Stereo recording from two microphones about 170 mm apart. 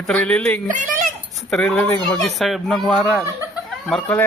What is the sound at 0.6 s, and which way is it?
Speech, 50° right (ahead or behind).